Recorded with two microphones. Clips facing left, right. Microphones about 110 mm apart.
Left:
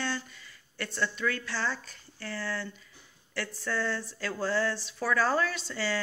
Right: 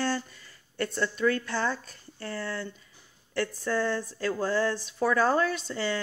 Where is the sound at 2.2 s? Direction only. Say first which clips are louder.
Right 2 dB; 30° right (ahead or behind).